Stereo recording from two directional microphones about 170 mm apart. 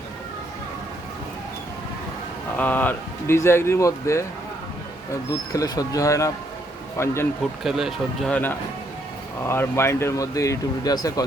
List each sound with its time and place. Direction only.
2.6 s speech: 10° left (ahead or behind)
5.3 s speech: 20° left (ahead or behind)
7.6 s speech: centre (ahead or behind)
9.5 s speech: 15° left (ahead or behind)